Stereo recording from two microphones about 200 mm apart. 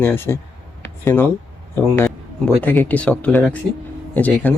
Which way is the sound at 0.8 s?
10° left (ahead or behind).